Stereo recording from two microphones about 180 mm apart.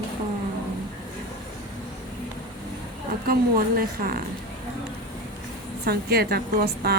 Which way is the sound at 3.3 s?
55° right (ahead or behind).